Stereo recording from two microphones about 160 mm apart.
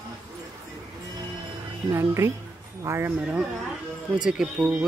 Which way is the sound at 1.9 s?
15° right (ahead or behind).